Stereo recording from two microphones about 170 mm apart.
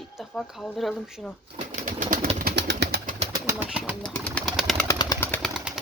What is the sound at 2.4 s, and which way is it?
Pigeon, 70° right (ahead or behind).